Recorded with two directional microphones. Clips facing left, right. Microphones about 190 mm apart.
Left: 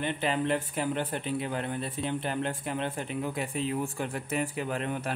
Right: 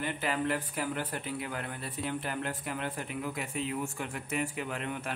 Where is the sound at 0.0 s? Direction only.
25° left (ahead or behind).